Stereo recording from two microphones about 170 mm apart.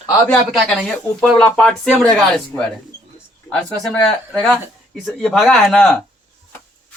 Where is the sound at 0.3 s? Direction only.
5° left (ahead or behind).